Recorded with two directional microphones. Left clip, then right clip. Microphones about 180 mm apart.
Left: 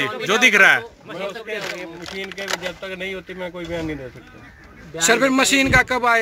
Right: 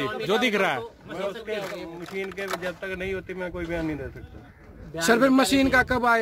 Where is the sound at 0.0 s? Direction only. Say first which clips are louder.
Left 8 dB; 10° right (ahead or behind).